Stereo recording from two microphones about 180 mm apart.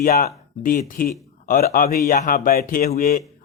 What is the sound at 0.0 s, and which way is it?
A man's voice, 55° left (ahead or behind).